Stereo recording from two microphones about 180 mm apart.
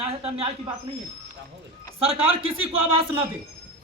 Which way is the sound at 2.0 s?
30° right (ahead or behind).